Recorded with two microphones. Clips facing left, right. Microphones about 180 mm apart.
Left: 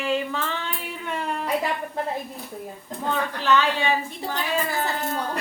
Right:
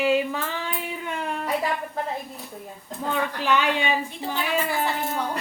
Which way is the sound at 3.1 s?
15° right (ahead or behind).